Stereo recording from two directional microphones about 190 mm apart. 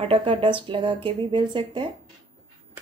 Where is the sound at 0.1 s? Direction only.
25° right (ahead or behind).